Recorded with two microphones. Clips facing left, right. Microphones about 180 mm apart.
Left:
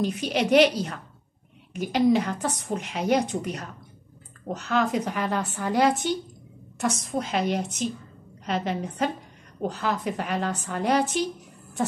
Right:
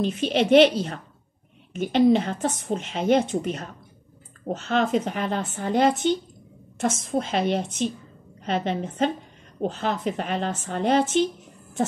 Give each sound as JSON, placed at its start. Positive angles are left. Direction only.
{"t": 0.0, "sound": "a woman's voice", "side_deg": -25}